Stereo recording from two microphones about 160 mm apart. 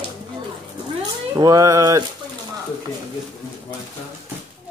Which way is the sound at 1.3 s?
20° right (ahead or behind).